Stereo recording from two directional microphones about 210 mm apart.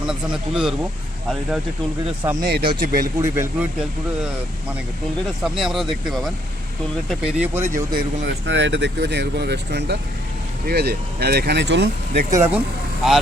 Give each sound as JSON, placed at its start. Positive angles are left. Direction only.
{"t": 0.1, "sound": "speech", "side_deg": -5}
{"t": 2.4, "sound": "speech", "side_deg": -45}
{"t": 3.2, "sound": "speech", "side_deg": -10}
{"t": 5.4, "sound": "speech", "side_deg": 0}
{"t": 7.9, "sound": "speech", "side_deg": -55}
{"t": 12.3, "sound": "speech", "side_deg": -10}